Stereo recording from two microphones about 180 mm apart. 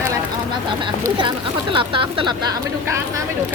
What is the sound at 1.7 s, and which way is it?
Speech, 30° right (ahead or behind).